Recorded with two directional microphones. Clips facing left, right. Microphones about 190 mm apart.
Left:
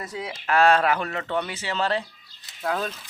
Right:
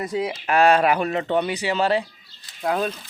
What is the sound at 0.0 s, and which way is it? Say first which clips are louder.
Speech: right 8 dB; 20° right (ahead or behind).